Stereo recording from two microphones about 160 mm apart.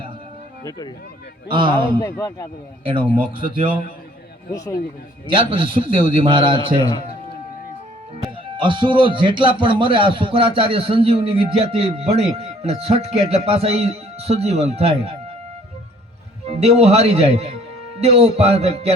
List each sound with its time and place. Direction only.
1.5 s a man's voice: 30° right (ahead or behind)
2.0 s speech: 15° left (ahead or behind)
2.8 s a man's voice: 35° right (ahead or behind)
4.5 s speech: 20° left (ahead or behind)
5.3 s a man's voice: 35° right (ahead or behind)
6.8 s music: 25° left (ahead or behind)
8.5 s a man's voice: 30° right (ahead or behind)
16.5 s a man's voice: 40° right (ahead or behind)